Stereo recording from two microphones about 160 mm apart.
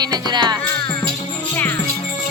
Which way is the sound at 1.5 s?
15° left (ahead or behind).